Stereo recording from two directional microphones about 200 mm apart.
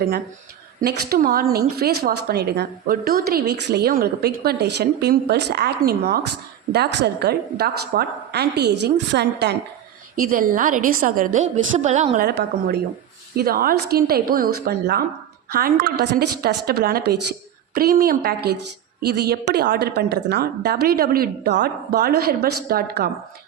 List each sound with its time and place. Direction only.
0.8 s a woman's voice: 50° right (ahead or behind)
10.2 s a woman's voice: 45° right (ahead or behind)
12.3 s a woman's voice: 55° right (ahead or behind)